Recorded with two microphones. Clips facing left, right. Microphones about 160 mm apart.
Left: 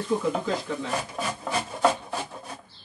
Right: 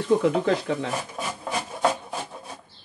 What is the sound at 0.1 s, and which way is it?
Speech, 90° right.